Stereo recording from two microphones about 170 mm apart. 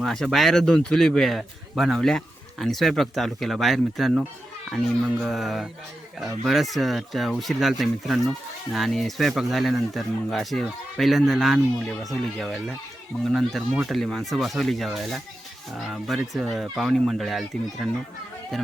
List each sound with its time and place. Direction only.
0.0 s speech: centre (ahead or behind)